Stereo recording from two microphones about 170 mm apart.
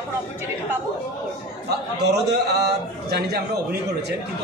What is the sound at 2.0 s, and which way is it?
A man's voice, 80° right.